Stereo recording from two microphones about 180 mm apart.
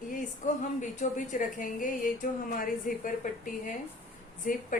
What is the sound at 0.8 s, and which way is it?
A woman's voice, 45° left (ahead or behind).